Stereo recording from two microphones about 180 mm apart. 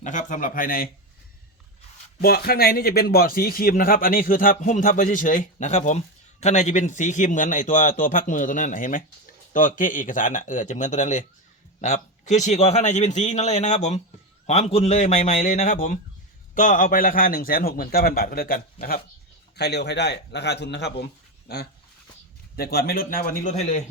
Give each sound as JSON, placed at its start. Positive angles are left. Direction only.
{"t": 0.0, "sound": "a man's voice", "side_deg": 45}
{"t": 2.2, "sound": "a man's voice", "side_deg": 60}
{"t": 19.5, "sound": "a man's voice", "side_deg": 70}